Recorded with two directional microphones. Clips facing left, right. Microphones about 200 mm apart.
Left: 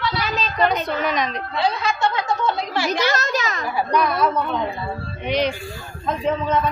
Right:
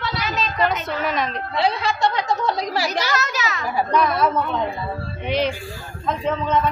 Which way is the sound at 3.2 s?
45° left (ahead or behind).